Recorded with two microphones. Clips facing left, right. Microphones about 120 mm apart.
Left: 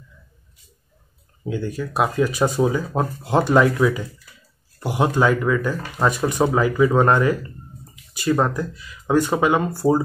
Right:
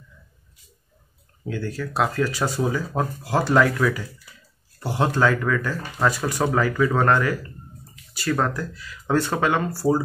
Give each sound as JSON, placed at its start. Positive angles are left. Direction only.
{"t": 1.5, "sound": "speech", "side_deg": 20}